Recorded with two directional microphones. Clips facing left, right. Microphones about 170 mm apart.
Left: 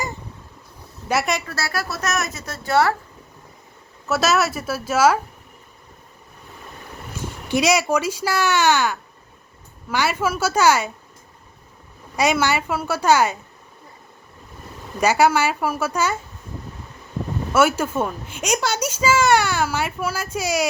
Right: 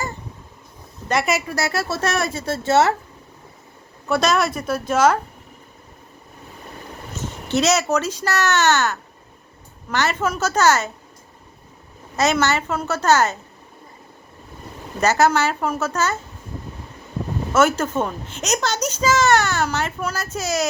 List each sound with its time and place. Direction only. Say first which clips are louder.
1.0 s a woman's voice: even; 5° left (ahead or behind)
1.3 s a woman's voice: right 3 dB; 10° right (ahead or behind)
4.1 s a woman's voice: right 1 dB; 5° left (ahead or behind)
7.4 s a woman's voice: even; 10° left (ahead or behind)
12.1 s a woman's voice: even; 10° left (ahead or behind)
15.0 s a woman's voice: even; 10° left (ahead or behind)
17.5 s a woman's voice: even; 10° left (ahead or behind)